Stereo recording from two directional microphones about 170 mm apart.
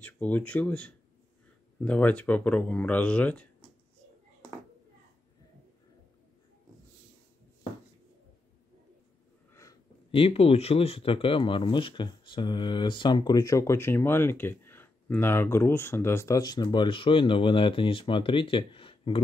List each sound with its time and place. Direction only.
0.0 s speech: 10° left (ahead or behind)
9.5 s a sound: 20° left (ahead or behind)
10.1 s speech: 35° left (ahead or behind)